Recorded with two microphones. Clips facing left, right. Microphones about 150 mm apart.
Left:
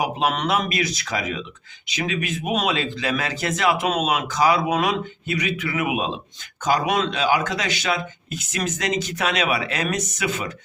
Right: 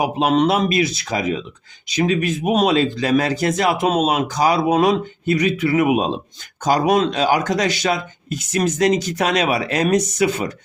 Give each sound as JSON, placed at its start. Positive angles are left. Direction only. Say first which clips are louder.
{"t": 0.0, "sound": "speech", "louder": "right 6 dB", "side_deg": -30}